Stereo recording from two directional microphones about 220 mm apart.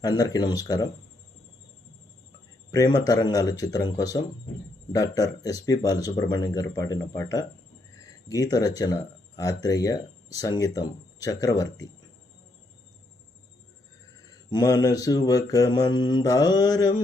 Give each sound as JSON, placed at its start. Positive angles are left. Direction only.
{"t": 0.0, "sound": "speech", "side_deg": 15}
{"t": 2.7, "sound": "speech", "side_deg": 15}
{"t": 14.5, "sound": "speech", "side_deg": 15}